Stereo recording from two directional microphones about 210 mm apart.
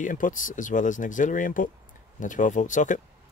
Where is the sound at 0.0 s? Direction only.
40° left (ahead or behind).